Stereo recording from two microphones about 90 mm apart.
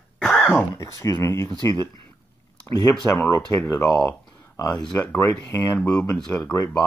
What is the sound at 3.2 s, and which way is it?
Speech, 30° left (ahead or behind).